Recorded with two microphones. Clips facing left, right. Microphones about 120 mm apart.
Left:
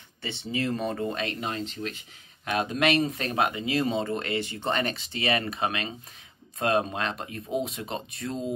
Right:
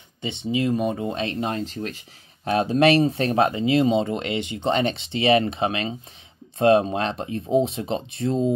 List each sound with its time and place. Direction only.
0.2 s speech: 20° right (ahead or behind)
1.5 s speech: 40° right (ahead or behind)